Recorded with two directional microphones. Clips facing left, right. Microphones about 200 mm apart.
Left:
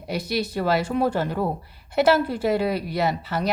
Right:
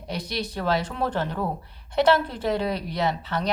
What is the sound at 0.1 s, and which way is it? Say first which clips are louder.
A woman's voice: left 5 dB; 10° left (ahead or behind).